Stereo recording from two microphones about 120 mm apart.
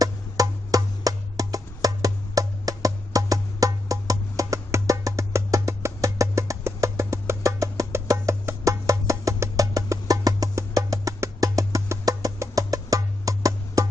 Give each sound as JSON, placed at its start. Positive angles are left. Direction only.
{"t": 0.0, "sound": "music", "side_deg": -30}